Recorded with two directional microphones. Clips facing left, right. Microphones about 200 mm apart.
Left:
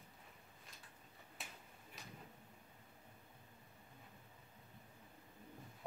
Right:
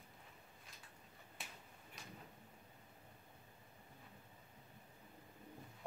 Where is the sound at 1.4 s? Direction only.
Centre (ahead or behind).